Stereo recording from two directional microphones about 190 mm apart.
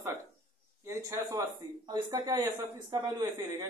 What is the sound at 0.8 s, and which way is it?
A man's voice, 15° right (ahead or behind).